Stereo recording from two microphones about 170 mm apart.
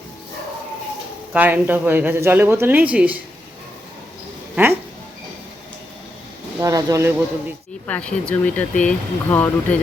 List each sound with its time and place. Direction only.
1.3 s speech: 10° right (ahead or behind)
4.5 s a sound: 10° right (ahead or behind)
6.6 s speech: 20° right (ahead or behind)
7.9 s speech: 5° left (ahead or behind)